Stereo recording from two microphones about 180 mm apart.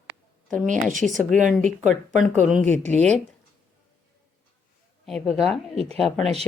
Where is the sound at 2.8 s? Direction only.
40° right (ahead or behind).